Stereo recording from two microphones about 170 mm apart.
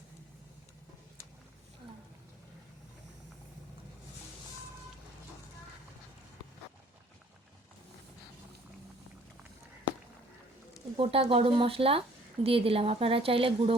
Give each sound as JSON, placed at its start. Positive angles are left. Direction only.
{"t": 10.9, "sound": "a woman's voice", "side_deg": -35}